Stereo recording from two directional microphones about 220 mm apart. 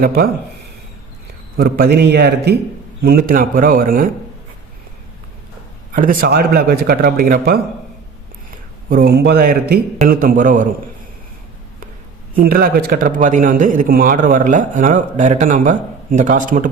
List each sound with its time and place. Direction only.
0.0 s a man's voice: 40° right (ahead or behind)
1.5 s a man's voice: 45° right (ahead or behind)
5.9 s a man's voice: 40° right (ahead or behind)
12.4 s a man's voice: 40° right (ahead or behind)